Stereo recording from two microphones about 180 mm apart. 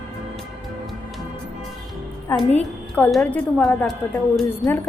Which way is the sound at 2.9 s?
5° left (ahead or behind).